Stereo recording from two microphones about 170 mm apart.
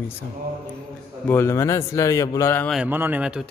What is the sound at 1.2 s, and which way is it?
A man's voice, 15° left (ahead or behind).